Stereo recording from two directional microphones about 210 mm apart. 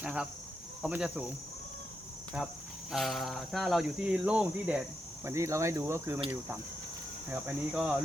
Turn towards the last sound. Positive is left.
turn(degrees=-5)  # may be behind; listen again after turning